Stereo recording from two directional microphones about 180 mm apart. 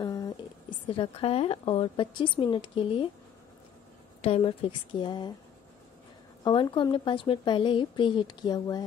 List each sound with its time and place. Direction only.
0.0 s a sound: 20° left (ahead or behind)
0.8 s a woman's voice: 30° left (ahead or behind)
4.2 s a woman's voice: 30° left (ahead or behind)
6.4 s a woman's voice: 25° left (ahead or behind)